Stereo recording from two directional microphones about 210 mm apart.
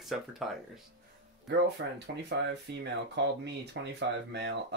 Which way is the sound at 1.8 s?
60° right (ahead or behind).